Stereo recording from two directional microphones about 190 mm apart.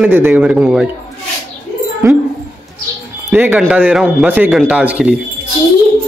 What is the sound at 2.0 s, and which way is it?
Speech, 15° right (ahead or behind).